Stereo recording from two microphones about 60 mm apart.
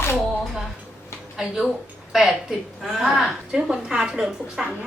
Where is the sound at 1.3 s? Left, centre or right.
Centre.